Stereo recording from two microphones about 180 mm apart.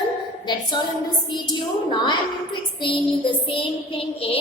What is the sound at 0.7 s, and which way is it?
A woman's voice, 25° left (ahead or behind).